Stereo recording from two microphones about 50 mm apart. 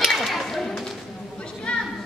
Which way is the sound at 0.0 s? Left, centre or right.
Centre.